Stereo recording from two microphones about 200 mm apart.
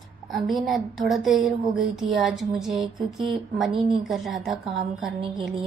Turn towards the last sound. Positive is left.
turn(degrees=-25)  # may be behind; listen again after turning